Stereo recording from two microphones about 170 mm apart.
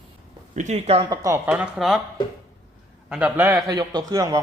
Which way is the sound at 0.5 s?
45° right (ahead or behind).